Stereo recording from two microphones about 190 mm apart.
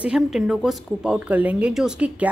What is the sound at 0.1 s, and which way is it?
A woman's voice, centre (ahead or behind).